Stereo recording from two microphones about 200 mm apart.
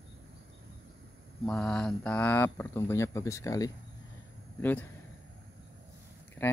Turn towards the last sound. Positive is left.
turn(degrees=10)  # may be behind; listen again after turning